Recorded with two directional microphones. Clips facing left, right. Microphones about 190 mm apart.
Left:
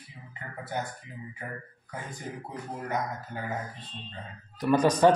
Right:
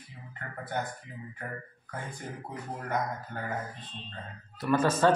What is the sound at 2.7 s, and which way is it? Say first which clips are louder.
Speech: even; 10° left (ahead or behind).